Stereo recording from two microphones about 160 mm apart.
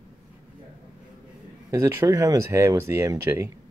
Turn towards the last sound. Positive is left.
turn(degrees=-20)  # may be behind; listen again after turning